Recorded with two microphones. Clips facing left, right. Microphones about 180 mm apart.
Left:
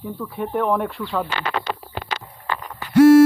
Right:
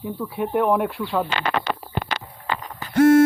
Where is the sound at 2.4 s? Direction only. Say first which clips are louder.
Even; 20° right (ahead or behind).